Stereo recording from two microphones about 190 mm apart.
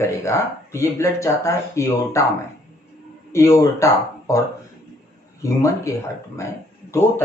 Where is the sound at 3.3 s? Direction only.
15° left (ahead or behind).